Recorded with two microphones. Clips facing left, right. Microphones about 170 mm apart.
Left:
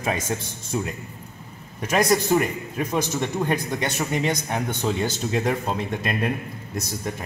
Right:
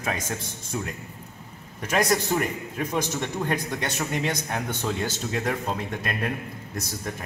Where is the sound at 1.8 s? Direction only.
10° left (ahead or behind).